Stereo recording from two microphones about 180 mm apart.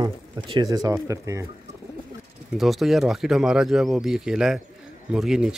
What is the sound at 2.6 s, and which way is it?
Speech, centre (ahead or behind).